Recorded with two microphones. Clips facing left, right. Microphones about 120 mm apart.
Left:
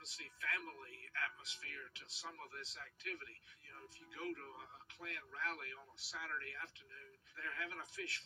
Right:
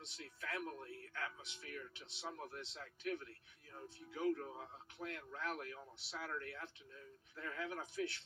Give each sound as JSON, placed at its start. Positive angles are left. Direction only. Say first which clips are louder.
{"t": 0.0, "sound": "speech", "louder": "even", "side_deg": -25}